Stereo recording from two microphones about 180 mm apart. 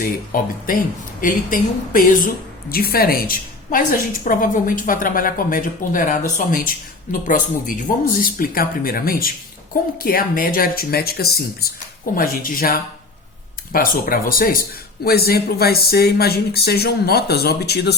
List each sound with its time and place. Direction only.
0.0 s speech: 50° left (ahead or behind)